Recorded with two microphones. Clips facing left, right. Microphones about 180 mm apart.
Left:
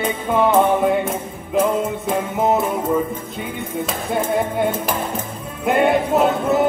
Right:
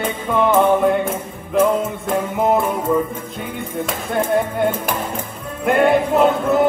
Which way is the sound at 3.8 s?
Centre (ahead or behind).